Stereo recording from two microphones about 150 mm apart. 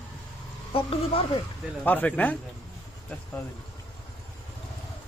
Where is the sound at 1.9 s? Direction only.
10° left (ahead or behind).